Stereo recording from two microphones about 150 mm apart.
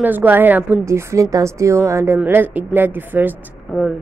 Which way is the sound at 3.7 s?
Centre (ahead or behind).